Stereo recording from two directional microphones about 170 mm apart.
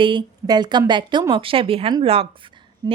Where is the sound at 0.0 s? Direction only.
25° right (ahead or behind).